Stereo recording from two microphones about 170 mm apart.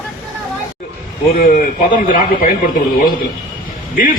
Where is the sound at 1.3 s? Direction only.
55° left (ahead or behind).